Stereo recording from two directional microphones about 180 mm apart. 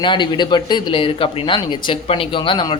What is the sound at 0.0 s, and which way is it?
Speech, 25° left (ahead or behind).